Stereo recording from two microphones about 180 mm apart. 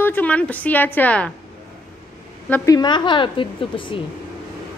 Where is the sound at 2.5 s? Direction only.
20° left (ahead or behind).